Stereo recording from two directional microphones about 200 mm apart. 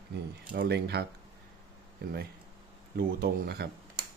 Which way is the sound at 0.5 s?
55° right (ahead or behind).